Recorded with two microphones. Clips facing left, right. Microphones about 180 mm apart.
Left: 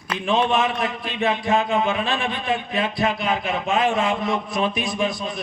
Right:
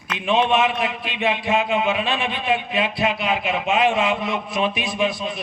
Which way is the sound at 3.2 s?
20° right (ahead or behind).